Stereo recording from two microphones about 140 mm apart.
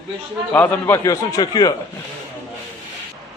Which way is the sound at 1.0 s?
25° left (ahead or behind).